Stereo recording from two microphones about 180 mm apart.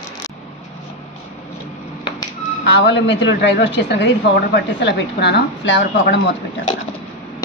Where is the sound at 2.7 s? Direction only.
75° left (ahead or behind).